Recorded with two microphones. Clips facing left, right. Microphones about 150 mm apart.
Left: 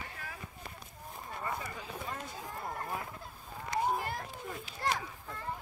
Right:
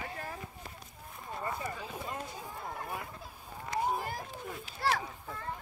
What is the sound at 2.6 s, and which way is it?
Fowl, centre (ahead or behind).